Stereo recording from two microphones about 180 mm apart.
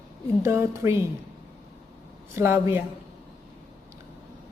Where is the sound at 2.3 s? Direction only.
15° right (ahead or behind).